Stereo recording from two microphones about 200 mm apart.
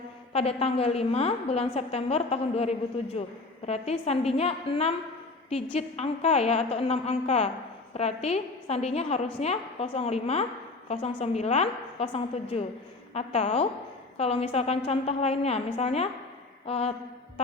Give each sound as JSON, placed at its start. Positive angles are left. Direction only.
{"t": 0.3, "sound": "a woman's voice", "side_deg": 30}